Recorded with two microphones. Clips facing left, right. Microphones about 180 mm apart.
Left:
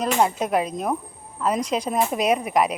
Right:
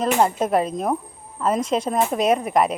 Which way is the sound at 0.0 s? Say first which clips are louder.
Right 2 dB; centre (ahead or behind).